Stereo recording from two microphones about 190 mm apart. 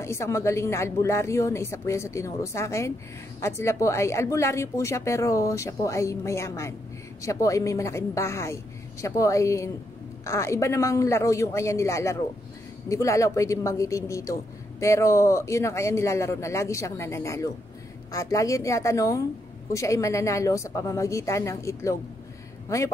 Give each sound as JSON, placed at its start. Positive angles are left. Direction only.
{"t": 0.0, "sound": "a woman's voice", "side_deg": 15}